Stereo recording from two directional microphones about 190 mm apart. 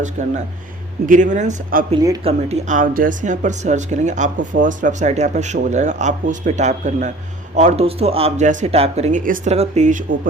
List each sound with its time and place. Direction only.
0.0 s speech: 40° right (ahead or behind)